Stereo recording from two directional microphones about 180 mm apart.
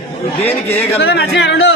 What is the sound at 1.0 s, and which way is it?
Speech, 65° left (ahead or behind).